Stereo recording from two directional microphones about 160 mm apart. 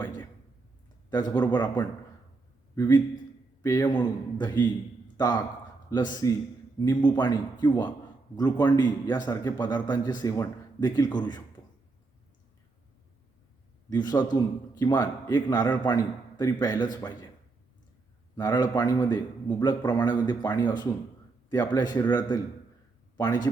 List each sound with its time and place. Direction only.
1.1 s a man's voice: 25° left (ahead or behind)
2.7 s a man's voice: 25° left (ahead or behind)
13.9 s a man's voice: 25° left (ahead or behind)
18.3 s a man's voice: 25° left (ahead or behind)